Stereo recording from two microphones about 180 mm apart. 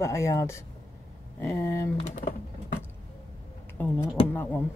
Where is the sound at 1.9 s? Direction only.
35° left (ahead or behind).